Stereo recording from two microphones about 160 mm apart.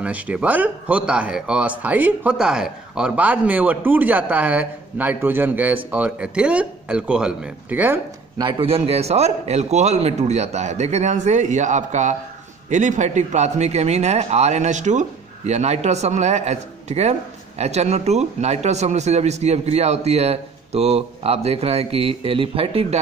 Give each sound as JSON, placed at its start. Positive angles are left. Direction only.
{"t": 0.0, "sound": "speech", "side_deg": -10}
{"t": 8.4, "sound": "a man's voice", "side_deg": -35}